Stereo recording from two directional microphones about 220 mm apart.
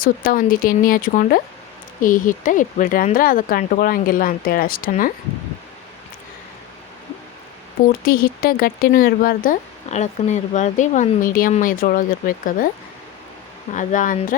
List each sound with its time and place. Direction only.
0.0 s speech: 40° left (ahead or behind)
8.0 s speech: 40° left (ahead or behind)
13.7 s speech: 35° left (ahead or behind)